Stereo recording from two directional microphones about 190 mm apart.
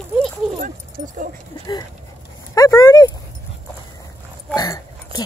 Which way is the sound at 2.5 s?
20° left (ahead or behind).